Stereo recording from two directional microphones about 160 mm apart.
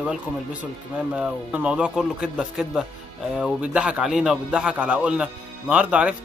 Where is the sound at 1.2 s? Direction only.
5° right (ahead or behind).